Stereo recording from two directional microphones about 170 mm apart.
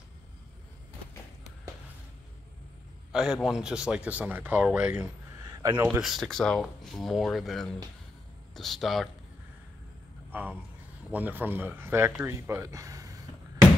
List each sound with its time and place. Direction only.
3.1 s speech: 5° right (ahead or behind)
5.4 s a sound: 25° right (ahead or behind)
5.9 s speech: 5° right (ahead or behind)
11.1 s speech: 10° right (ahead or behind)